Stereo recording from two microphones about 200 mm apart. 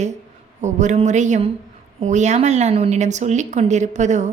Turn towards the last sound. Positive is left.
turn(degrees=-35)  # may be behind; listen again after turning